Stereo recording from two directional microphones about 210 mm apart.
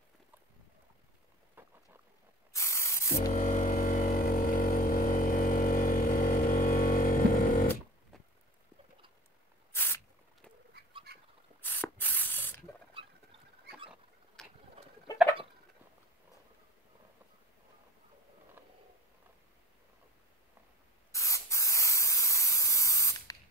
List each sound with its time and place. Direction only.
2.5 s spray: 15° left (ahead or behind)
3.3 s vehicle: 40° left (ahead or behind)
9.7 s a sound: 10° left (ahead or behind)
11.1 s fowl: 50° right (ahead or behind)
11.6 s spray: 10° left (ahead or behind)
14.4 s ratchet: centre (ahead or behind)
18.6 s a sound: 10° right (ahead or behind)
21.1 s spray: 15° left (ahead or behind)